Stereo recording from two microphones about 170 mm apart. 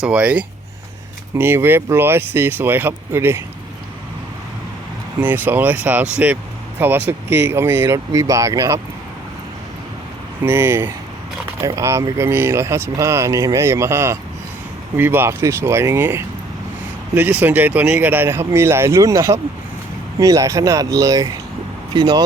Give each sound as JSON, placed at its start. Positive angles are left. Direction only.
{"t": 0.0, "sound": "speech", "side_deg": -10}
{"t": 5.2, "sound": "speech", "side_deg": -10}
{"t": 10.4, "sound": "speech", "side_deg": -10}
{"t": 17.4, "sound": "speech", "side_deg": -10}